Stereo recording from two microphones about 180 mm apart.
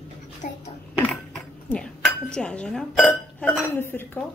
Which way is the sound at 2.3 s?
5° left (ahead or behind).